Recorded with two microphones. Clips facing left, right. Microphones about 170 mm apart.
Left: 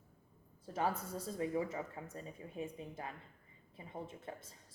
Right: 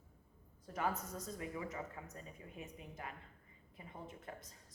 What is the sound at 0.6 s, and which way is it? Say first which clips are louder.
Speech: left 3 dB; 30° left (ahead or behind).